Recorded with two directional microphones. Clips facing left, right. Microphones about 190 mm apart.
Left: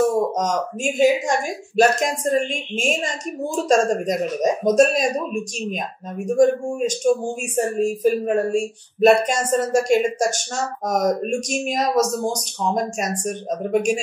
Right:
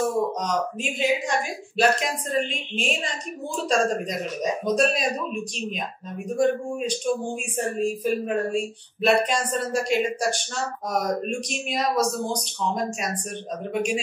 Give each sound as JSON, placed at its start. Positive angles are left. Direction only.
{"t": 0.4, "sound": "speech", "side_deg": 45}